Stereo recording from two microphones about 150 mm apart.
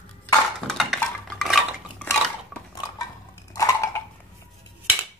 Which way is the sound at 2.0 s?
20° left (ahead or behind).